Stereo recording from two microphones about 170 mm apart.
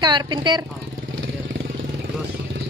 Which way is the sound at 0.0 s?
25° right (ahead or behind).